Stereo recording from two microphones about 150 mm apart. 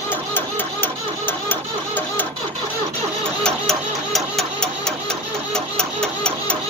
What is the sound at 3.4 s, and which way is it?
Music, centre (ahead or behind).